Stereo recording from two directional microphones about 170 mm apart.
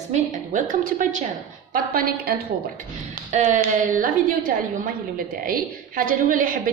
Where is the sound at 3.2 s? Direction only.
45° right (ahead or behind).